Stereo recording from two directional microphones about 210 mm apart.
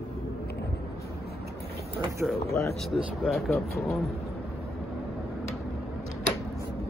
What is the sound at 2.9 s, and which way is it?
Speech, centre (ahead or behind).